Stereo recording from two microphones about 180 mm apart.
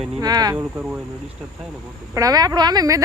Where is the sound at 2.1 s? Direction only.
20° right (ahead or behind).